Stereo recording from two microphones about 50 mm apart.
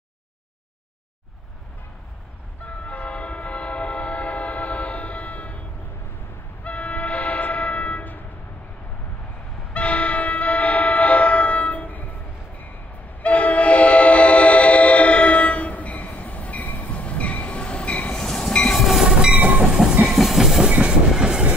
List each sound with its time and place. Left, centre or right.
2.6 s train: left
6.6 s train: left
9.8 s train: left
13.2 s train: left
18.2 s train: centre
18.8 s train: centre
20.6 s train: centre